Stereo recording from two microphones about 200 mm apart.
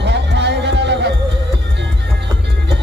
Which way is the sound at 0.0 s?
60° right (ahead or behind).